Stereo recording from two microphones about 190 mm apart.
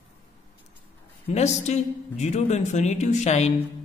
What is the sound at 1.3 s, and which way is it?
Speech, 35° left (ahead or behind).